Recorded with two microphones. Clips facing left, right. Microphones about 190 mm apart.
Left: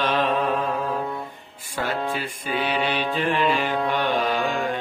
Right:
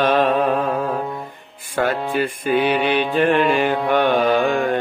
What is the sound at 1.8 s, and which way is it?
Music, 60° right (ahead or behind).